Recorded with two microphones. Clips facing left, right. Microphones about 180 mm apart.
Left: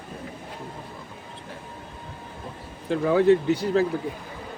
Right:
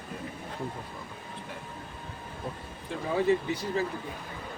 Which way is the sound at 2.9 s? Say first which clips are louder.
Left 8 dB; 80° left.